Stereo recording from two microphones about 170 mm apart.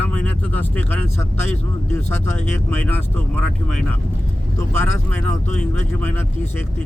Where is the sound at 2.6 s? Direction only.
10° left (ahead or behind).